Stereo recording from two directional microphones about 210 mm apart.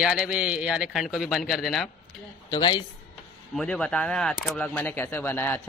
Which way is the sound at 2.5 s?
20° left (ahead or behind).